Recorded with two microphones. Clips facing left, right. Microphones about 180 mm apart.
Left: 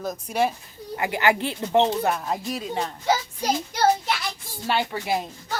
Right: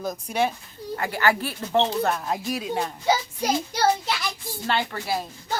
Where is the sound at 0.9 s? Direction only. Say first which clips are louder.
Left 1 dB; 15° left (ahead or behind); by 2.9 s 5° right (ahead or behind).